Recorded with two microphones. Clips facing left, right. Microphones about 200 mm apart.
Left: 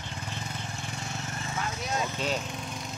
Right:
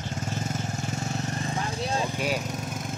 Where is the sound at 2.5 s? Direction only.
45° right (ahead or behind).